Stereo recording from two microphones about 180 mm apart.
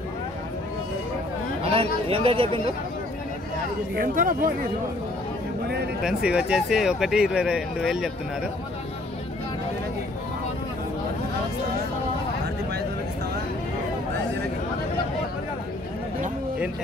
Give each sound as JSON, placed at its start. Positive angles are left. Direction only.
{"t": 1.6, "sound": "speech", "side_deg": -30}
{"t": 3.9, "sound": "speech", "side_deg": -50}
{"t": 6.0, "sound": "speech", "side_deg": -5}